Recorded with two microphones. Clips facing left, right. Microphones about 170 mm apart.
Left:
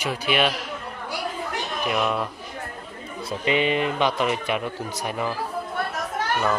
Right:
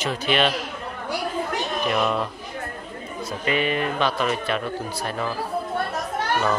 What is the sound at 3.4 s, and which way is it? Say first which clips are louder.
Speech: left 2 dB; 20° left (ahead or behind).